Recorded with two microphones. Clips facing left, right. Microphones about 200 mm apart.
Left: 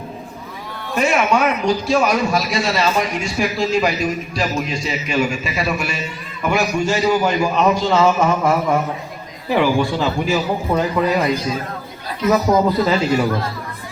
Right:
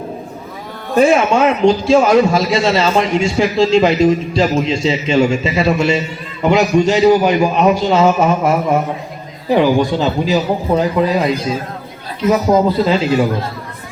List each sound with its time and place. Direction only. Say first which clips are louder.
0.9 s a man's voice: right 6 dB; 30° right (ahead or behind)
12.5 s a man's voice: right 3 dB; 25° right (ahead or behind)